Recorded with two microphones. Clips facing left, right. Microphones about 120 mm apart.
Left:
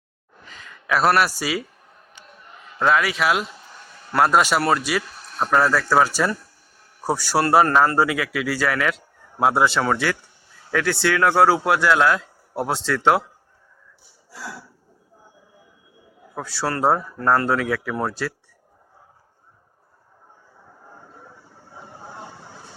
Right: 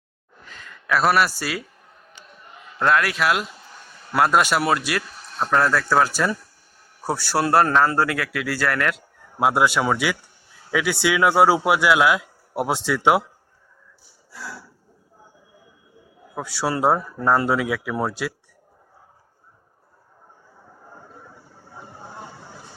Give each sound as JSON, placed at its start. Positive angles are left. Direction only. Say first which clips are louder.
{"t": 0.4, "sound": "a sound", "louder": "even", "side_deg": 0}
{"t": 1.3, "sound": "a man's voice", "louder": "left 3 dB", "side_deg": 10}
{"t": 2.7, "sound": "speech", "louder": "even", "side_deg": 0}
{"t": 16.3, "sound": "speech", "louder": "right 1 dB", "side_deg": -5}